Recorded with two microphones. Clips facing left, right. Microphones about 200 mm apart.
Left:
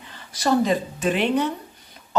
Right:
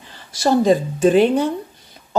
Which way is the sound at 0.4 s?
30° right (ahead or behind).